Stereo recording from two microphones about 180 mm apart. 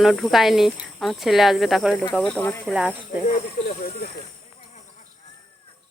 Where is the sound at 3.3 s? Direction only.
50° left (ahead or behind).